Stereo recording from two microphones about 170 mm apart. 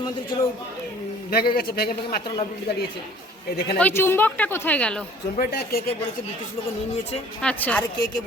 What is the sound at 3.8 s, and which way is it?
Speech, 10° left (ahead or behind).